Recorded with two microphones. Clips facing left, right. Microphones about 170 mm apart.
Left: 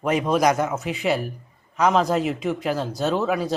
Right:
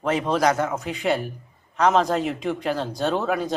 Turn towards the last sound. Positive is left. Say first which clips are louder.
# left 1 dB
turn(degrees=0)  # may be behind; listen again after turning